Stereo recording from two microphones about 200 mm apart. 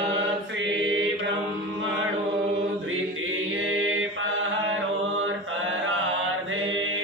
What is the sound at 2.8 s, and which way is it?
Chant, 85° right.